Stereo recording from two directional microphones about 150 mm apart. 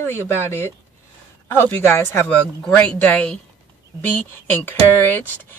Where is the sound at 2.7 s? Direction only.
10° left (ahead or behind).